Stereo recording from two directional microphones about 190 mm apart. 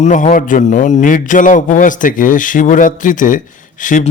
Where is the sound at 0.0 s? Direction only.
40° left (ahead or behind).